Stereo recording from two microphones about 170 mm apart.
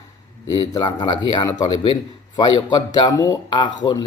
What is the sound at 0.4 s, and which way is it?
A man's voice, 20° left (ahead or behind).